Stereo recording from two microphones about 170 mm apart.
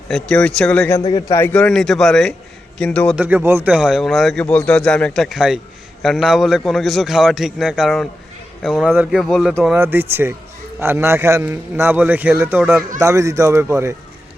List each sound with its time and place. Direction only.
0.1 s a man's voice: 5° left (ahead or behind)
1.1 s a man's voice: 15° left (ahead or behind)
3.2 s a man's voice: 10° right (ahead or behind)